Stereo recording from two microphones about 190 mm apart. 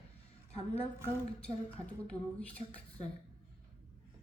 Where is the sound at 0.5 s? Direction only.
35° left (ahead or behind).